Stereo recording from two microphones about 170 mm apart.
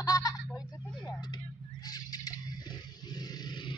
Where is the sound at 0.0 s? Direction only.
20° left (ahead or behind).